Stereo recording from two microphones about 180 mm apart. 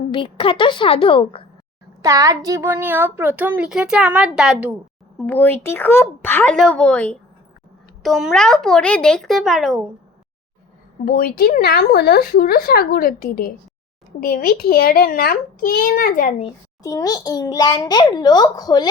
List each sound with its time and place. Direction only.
0.1 s a child's voice: 30° left (ahead or behind)
2.0 s a child's voice: 20° right (ahead or behind)
5.1 s speech: 10° left (ahead or behind)
11.0 s speech: 55° left (ahead or behind)
16.8 s a child's voice: 20° left (ahead or behind)